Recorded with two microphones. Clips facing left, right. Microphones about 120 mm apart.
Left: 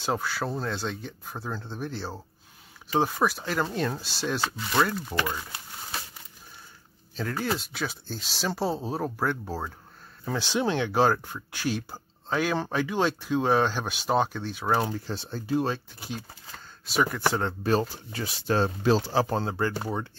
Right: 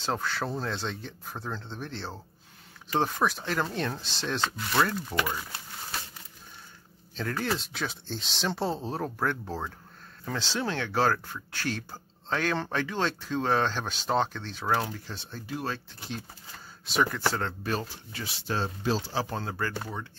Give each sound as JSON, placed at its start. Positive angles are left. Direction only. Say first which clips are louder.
{"t": 0.0, "sound": "speech", "louder": "left 2 dB", "side_deg": 5}
{"t": 7.2, "sound": "speech", "louder": "left 1 dB", "side_deg": 5}
{"t": 14.9, "sound": "speech", "louder": "left 7 dB", "side_deg": 35}
{"t": 15.7, "sound": "speech", "louder": "left 3 dB", "side_deg": 10}
{"t": 17.3, "sound": "speech", "louder": "left 3 dB", "side_deg": 15}
{"t": 17.6, "sound": "speech", "louder": "left 7 dB", "side_deg": 35}
{"t": 19.4, "sound": "speech", "louder": "left 4 dB", "side_deg": 25}